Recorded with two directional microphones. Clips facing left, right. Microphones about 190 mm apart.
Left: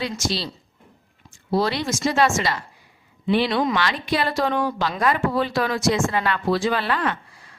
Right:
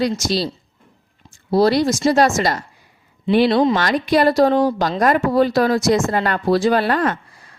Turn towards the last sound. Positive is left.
turn(degrees=-45)  # may be behind; listen again after turning